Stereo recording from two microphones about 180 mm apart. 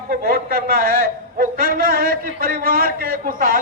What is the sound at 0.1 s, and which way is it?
A man's voice, 55° right (ahead or behind).